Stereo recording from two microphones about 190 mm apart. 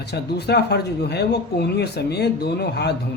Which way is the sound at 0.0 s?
60° left (ahead or behind).